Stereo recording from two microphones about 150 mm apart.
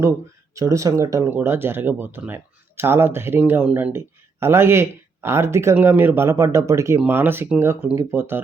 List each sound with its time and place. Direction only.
0.5 s speech: 20° right (ahead or behind)